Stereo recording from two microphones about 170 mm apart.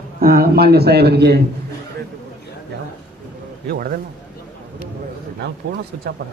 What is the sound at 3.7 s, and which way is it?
Speech, 60° right (ahead or behind).